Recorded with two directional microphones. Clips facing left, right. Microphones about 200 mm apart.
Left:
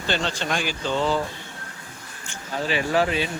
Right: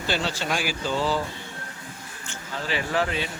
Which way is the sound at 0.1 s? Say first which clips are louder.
Left 1 dB; 5° right (ahead or behind).